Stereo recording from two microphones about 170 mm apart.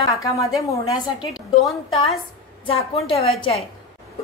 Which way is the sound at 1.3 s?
Centre (ahead or behind).